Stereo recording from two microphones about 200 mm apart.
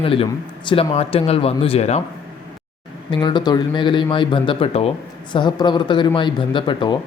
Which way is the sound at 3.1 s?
20° left (ahead or behind).